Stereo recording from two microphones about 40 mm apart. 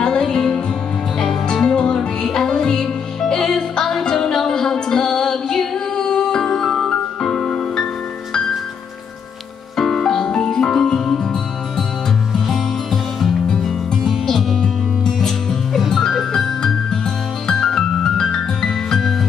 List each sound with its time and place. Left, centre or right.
0.0 s music: centre
1.6 s music: left
9.8 s music: centre
12.4 s music: centre